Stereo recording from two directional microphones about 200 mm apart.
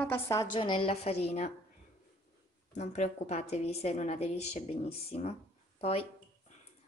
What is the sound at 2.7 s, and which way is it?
A woman's voice, 35° left (ahead or behind).